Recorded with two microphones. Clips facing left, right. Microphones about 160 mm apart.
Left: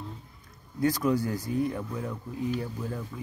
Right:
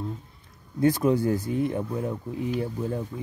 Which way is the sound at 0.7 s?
25° right (ahead or behind).